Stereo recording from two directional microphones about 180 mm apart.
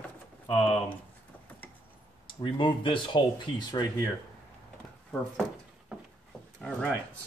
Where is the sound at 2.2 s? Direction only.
25° left (ahead or behind).